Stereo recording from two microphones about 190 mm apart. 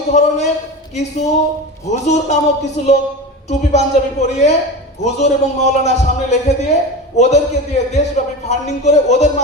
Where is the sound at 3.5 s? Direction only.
35° left (ahead or behind).